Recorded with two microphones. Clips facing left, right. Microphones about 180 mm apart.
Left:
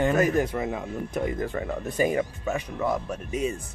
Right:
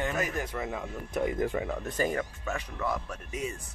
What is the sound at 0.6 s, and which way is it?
Speech, 10° left (ahead or behind).